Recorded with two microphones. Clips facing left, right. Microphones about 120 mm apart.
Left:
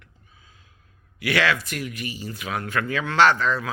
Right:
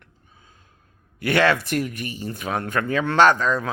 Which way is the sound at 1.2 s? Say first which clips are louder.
Right 4 dB; 50° right (ahead or behind).